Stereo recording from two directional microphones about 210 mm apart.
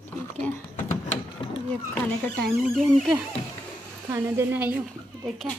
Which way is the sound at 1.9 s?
5° left (ahead or behind).